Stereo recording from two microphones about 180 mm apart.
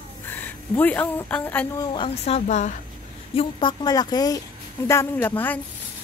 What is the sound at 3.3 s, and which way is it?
A woman's voice, 30° left (ahead or behind).